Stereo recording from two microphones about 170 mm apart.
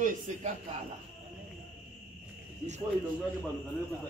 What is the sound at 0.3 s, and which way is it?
Speech, 45° right (ahead or behind).